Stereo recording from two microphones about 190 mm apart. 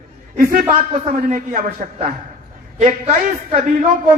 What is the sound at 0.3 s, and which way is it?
A man's voice, 45° right (ahead or behind).